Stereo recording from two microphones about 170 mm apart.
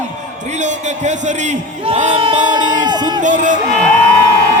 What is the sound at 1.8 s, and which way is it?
Crowd, 35° right (ahead or behind).